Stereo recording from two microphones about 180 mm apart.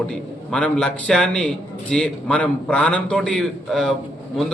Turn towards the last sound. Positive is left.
turn(degrees=0)  # may be behind; listen again after turning